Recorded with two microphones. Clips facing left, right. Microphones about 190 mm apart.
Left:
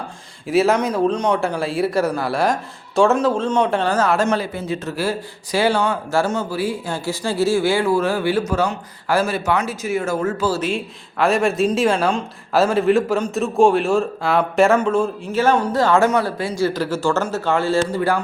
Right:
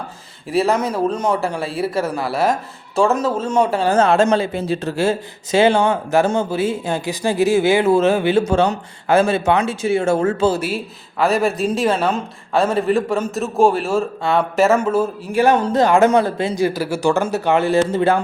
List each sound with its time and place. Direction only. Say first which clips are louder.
0.4 s speech: left 1 dB; centre (ahead or behind)
3.9 s speech: right 7 dB; 25° right (ahead or behind)
10.6 s speech: left 1 dB; 5° right (ahead or behind); by 18.2 s 20° right (ahead or behind)